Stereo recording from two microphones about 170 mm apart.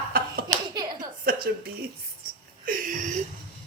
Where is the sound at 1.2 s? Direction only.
60° right (ahead or behind).